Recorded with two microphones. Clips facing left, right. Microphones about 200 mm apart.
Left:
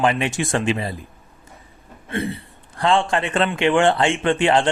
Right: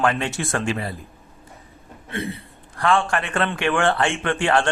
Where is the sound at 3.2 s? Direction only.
20° left (ahead or behind).